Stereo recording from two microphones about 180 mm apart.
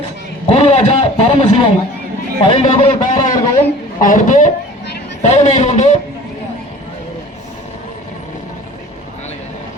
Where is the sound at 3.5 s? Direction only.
45° left (ahead or behind).